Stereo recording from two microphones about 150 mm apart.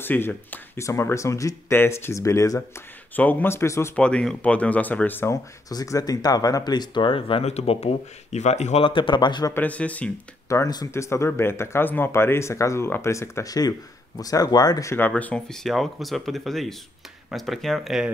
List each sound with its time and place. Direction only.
0.0 s speech: 15° left (ahead or behind)
3.9 s speech: 5° left (ahead or behind); by 8.8 s 50° left (ahead or behind)
8.8 s speech: 35° left (ahead or behind)
9.5 s speech: 10° left (ahead or behind)
10.5 s speech: 25° left (ahead or behind); by 18.1 s centre (ahead or behind)